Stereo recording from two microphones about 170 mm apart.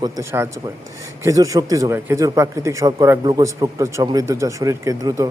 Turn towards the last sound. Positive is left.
turn(degrees=-20)  # may be behind; listen again after turning